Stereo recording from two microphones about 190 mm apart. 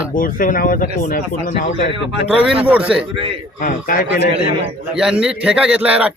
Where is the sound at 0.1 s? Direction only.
45° left (ahead or behind).